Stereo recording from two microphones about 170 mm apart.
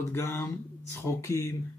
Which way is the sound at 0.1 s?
15° left (ahead or behind).